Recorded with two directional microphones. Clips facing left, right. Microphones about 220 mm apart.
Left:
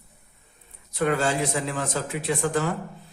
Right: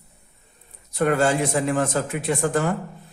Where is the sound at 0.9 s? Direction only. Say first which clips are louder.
Right 4 dB; 50° right (ahead or behind).